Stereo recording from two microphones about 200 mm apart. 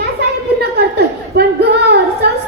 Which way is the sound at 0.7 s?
55° right (ahead or behind).